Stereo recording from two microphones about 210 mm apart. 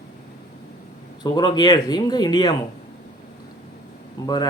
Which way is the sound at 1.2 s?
20° left (ahead or behind).